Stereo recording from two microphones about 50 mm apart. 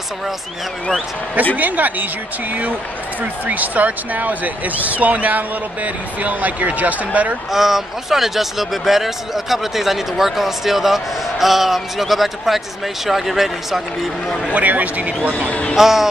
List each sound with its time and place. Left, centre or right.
1.5 s speech: right
3.2 s speech: right
7.5 s speech: centre
14.5 s speech: right
15.3 s speech: left
15.7 s speech: centre